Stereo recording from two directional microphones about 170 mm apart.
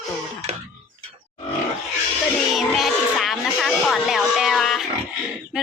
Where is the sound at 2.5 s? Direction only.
Centre (ahead or behind).